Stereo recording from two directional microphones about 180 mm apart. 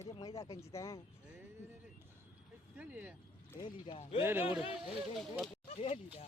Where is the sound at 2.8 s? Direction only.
10° right (ahead or behind).